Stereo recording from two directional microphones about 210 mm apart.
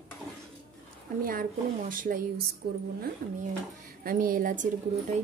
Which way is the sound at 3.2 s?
40° right (ahead or behind).